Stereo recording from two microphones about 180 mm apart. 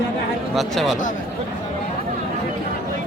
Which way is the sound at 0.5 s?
Centre (ahead or behind).